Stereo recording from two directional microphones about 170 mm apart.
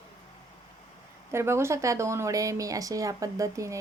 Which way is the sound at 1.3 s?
15° right (ahead or behind).